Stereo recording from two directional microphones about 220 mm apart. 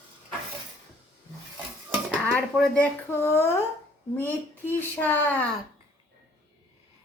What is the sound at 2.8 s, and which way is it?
A woman's voice, 10° left (ahead or behind).